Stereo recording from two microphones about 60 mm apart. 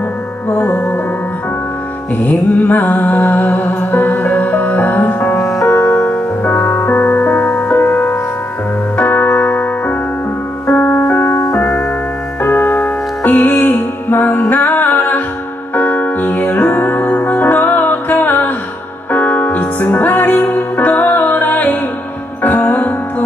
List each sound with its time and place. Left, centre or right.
2.6 s music: left
5.4 s music: left
6.0 s music: left
12.4 s music: left